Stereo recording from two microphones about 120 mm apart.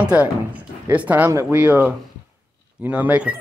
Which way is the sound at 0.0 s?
10° right (ahead or behind).